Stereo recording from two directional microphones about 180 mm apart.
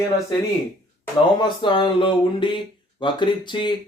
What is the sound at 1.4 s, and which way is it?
A man's voice, 25° left (ahead or behind).